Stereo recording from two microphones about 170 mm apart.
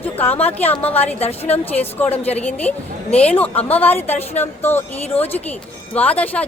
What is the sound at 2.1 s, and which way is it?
Speech, 10° left (ahead or behind).